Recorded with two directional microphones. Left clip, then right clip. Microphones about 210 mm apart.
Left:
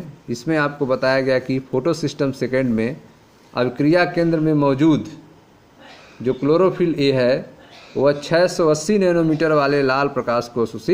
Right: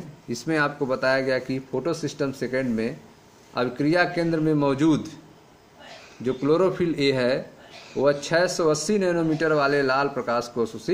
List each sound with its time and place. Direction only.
0.3 s speech: 15° left (ahead or behind)
6.2 s speech: 15° left (ahead or behind)